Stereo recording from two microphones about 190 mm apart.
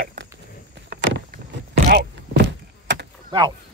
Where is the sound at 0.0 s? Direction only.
55° right (ahead or behind).